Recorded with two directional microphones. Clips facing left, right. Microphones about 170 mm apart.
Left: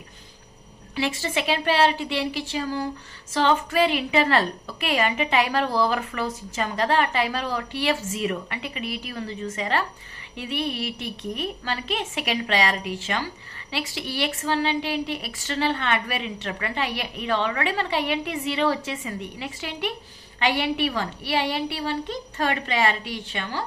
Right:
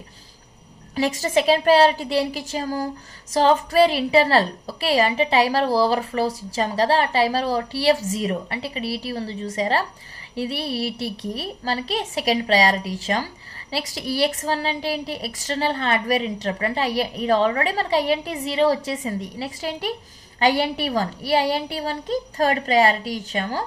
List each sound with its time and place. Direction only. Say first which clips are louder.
0.9 s a woman's voice: right 6 dB; 40° right (ahead or behind)